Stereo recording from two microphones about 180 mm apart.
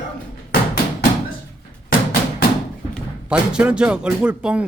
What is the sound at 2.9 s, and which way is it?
Speech, 5° right (ahead or behind).